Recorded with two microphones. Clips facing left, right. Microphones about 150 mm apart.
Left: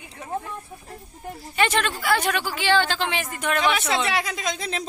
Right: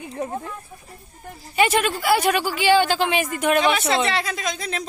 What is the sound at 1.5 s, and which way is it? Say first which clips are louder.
A woman's voice: right 4 dB; 10° right (ahead or behind).